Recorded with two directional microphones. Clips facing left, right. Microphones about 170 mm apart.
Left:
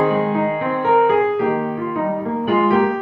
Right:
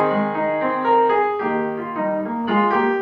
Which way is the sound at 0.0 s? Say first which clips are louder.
Left 2 dB; 15° left (ahead or behind).